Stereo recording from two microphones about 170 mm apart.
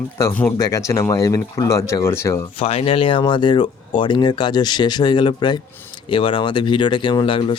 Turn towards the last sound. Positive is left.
turn(degrees=30)  # may be behind; listen again after turning